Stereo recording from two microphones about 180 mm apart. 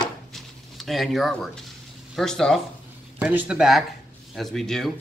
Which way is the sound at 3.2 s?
10° right (ahead or behind).